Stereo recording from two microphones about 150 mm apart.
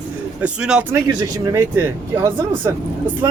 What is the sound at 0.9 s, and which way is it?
Speech, 20° right (ahead or behind).